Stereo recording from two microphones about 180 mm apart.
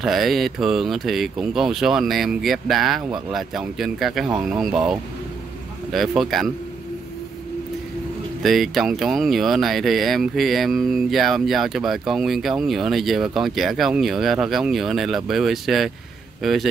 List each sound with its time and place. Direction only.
0.0 s speech: centre (ahead or behind)
5.9 s speech: centre (ahead or behind)
8.4 s speech: centre (ahead or behind)